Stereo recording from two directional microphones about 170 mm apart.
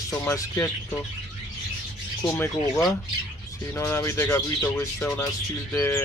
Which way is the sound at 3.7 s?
15° left (ahead or behind).